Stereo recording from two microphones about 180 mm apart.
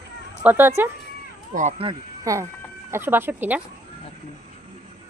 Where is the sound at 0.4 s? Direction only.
10° right (ahead or behind).